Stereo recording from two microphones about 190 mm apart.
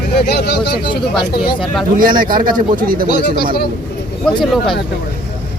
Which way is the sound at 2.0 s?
45° right (ahead or behind).